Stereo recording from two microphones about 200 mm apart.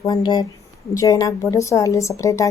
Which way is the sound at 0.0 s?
20° left (ahead or behind).